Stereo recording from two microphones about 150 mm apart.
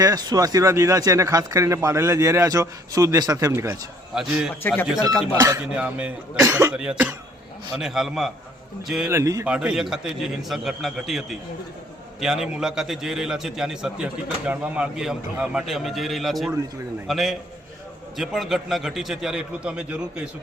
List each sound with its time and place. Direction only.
0.0 s speech: 25° right (ahead or behind)
4.1 s a man's voice: 5° right (ahead or behind)
5.3 s speech: 15° right (ahead or behind)
6.7 s a man's voice: 5° right (ahead or behind)
9.0 s speech: 20° right (ahead or behind)
9.5 s a man's voice: 5° right (ahead or behind)